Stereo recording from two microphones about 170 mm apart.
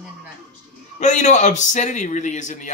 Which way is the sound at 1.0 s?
45° left (ahead or behind).